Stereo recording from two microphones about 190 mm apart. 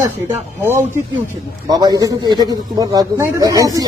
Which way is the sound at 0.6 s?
10° right (ahead or behind).